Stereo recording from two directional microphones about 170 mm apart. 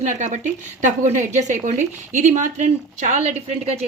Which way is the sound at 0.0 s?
45° right (ahead or behind).